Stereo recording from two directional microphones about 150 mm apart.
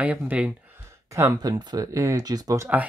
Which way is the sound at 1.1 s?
20° right (ahead or behind).